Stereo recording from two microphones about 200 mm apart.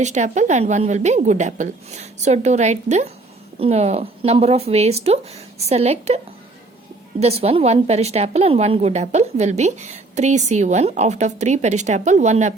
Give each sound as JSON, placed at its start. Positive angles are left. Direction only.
{"t": 0.0, "sound": "a woman's voice", "side_deg": -35}
{"t": 7.2, "sound": "a woman's voice", "side_deg": -30}